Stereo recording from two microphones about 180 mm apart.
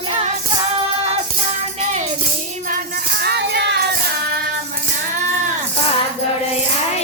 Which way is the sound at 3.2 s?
65° right (ahead or behind).